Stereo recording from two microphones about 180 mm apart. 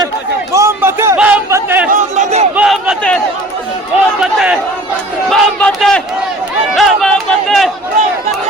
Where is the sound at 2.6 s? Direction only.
5° right (ahead or behind).